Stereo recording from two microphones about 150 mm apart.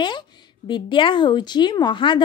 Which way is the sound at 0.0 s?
30° left (ahead or behind).